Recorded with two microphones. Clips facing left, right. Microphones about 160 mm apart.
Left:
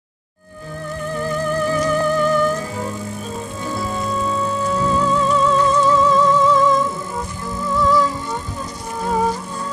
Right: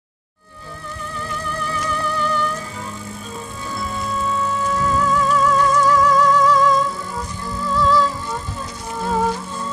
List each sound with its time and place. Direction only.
1.7 s music: 45° left (ahead or behind); by 8.1 s 15° left (ahead or behind)